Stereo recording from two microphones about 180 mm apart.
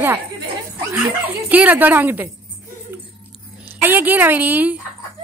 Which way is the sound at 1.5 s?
10° right (ahead or behind).